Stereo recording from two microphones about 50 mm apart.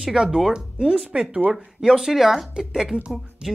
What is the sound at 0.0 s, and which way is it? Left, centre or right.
Speech, centre.